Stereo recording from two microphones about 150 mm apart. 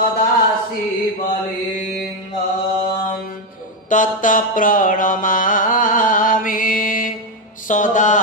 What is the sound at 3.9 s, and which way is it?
Music, 60° left (ahead or behind).